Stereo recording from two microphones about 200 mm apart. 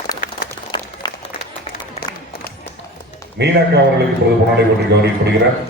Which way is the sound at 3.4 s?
60° right (ahead or behind).